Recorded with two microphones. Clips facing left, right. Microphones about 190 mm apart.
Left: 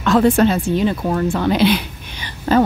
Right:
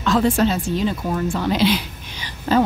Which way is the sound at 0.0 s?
60° left (ahead or behind).